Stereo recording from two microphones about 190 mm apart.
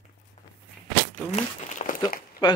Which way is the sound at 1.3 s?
40° left (ahead or behind).